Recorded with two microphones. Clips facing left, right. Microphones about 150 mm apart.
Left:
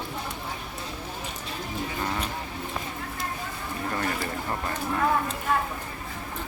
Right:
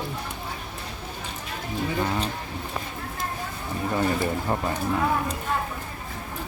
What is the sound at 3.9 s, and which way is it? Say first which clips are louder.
Speech: right 7 dB; 20° right (ahead or behind).